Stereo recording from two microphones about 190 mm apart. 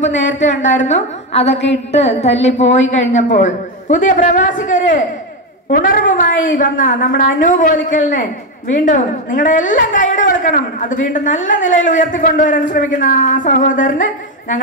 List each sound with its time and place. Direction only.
0.8 s a woman's voice: 35° left (ahead or behind)
1.5 s a sound: 70° left (ahead or behind)
2.0 s a man's voice: 35° left (ahead or behind)